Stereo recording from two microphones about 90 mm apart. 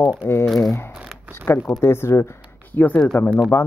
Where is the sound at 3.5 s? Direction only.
30° left (ahead or behind).